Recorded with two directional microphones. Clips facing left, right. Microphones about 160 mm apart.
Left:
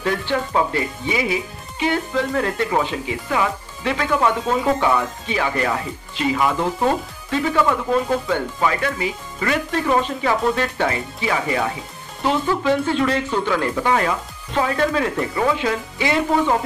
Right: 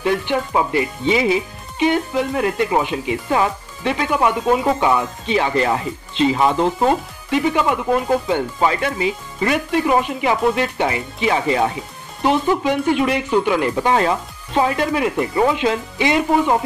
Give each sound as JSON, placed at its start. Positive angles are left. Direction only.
{"t": 0.0, "sound": "speech", "side_deg": -15}
{"t": 3.3, "sound": "speech", "side_deg": -25}